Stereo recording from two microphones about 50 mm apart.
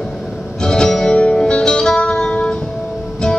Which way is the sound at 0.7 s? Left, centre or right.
Centre.